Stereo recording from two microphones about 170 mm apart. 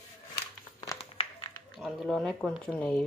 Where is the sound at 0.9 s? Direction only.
30° left (ahead or behind).